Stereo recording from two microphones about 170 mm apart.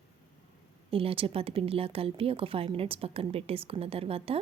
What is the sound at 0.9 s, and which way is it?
A woman's voice, 35° right (ahead or behind).